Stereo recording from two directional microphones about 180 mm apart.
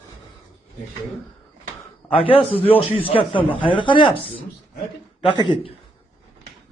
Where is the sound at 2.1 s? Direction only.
30° left (ahead or behind).